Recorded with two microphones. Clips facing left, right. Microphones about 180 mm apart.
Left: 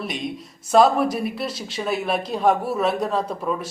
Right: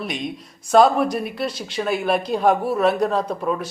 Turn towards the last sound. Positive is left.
turn(degrees=0)  # may be behind; listen again after turning